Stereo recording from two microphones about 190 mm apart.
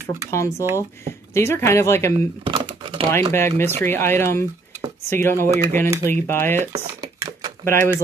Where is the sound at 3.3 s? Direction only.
10° left (ahead or behind).